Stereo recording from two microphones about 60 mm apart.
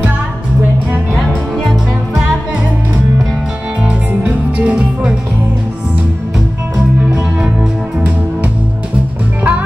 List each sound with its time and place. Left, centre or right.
3.8 s music: right
9.4 s music: right